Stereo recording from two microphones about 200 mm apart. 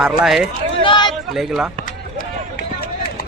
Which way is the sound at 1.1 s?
Centre (ahead or behind).